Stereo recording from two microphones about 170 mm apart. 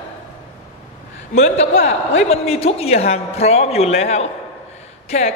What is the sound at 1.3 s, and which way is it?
A man's voice, 40° left (ahead or behind).